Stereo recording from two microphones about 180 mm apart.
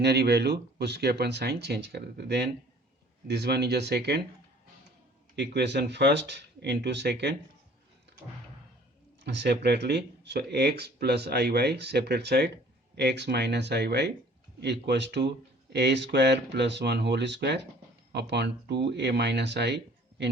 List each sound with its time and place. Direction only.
0.0 s speech: 65° right (ahead or behind)
5.4 s speech: 70° right (ahead or behind)
9.2 s speech: 70° right (ahead or behind)